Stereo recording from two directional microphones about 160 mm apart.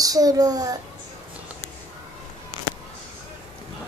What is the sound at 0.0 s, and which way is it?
Speech, 25° right (ahead or behind).